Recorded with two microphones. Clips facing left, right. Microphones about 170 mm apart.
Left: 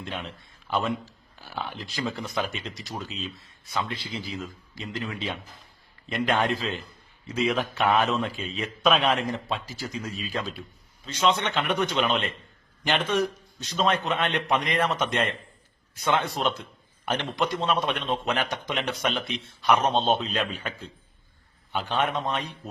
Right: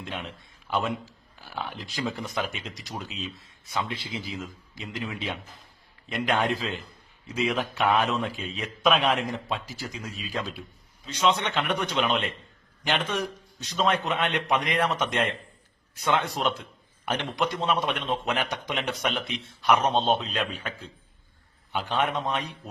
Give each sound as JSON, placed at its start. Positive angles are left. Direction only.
{"t": 0.1, "sound": "a man's voice", "side_deg": 0}
{"t": 4.8, "sound": "a man's voice", "side_deg": -5}